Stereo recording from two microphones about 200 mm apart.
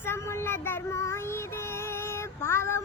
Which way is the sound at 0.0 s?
10° left (ahead or behind).